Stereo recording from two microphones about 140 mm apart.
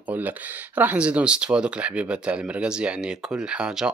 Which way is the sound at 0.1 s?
10° right (ahead or behind).